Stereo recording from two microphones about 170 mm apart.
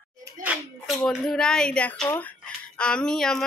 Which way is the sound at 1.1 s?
Centre (ahead or behind).